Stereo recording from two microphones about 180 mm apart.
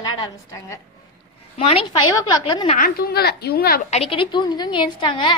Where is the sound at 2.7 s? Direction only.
55° left (ahead or behind).